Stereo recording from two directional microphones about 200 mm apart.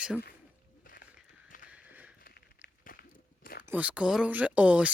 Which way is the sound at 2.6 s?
50° left (ahead or behind).